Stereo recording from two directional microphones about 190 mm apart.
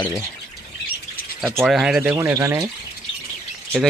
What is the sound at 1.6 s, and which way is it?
Speech, 5° right (ahead or behind).